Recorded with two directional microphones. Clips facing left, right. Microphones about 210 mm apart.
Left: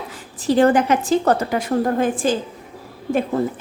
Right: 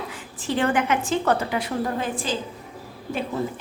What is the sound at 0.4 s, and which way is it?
A woman's voice, 40° left (ahead or behind).